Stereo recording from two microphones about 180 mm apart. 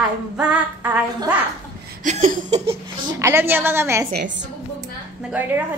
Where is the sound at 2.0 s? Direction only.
45° right (ahead or behind).